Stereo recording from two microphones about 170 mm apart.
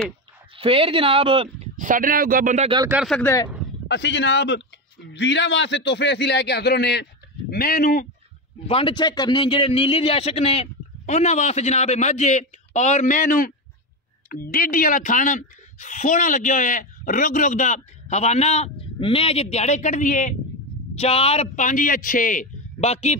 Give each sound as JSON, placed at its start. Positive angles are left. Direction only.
{"t": 0.6, "sound": "speech", "side_deg": -30}
{"t": 1.8, "sound": "speech", "side_deg": -50}
{"t": 3.1, "sound": "speech", "side_deg": 10}
{"t": 3.8, "sound": "a man's voice", "side_deg": 85}
{"t": 8.6, "sound": "a man's voice", "side_deg": 30}
{"t": 20.9, "sound": "a woman's voice", "side_deg": 35}